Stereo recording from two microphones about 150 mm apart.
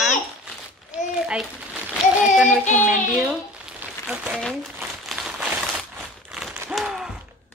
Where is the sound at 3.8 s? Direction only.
10° right (ahead or behind).